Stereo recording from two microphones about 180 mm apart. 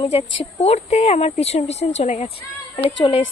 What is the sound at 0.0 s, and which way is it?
Speech, 30° left (ahead or behind).